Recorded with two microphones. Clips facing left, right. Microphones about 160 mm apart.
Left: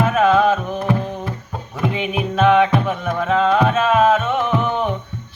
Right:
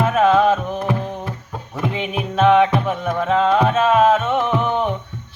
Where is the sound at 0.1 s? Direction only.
25° right (ahead or behind).